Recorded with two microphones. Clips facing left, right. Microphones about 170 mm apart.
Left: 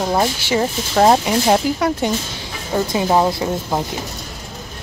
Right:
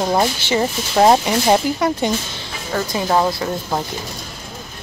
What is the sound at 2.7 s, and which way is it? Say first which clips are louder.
Speech: left 2 dB; 20° left (ahead or behind).